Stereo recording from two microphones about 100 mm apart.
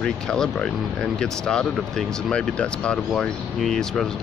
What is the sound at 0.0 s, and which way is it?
Speech, 5° left (ahead or behind).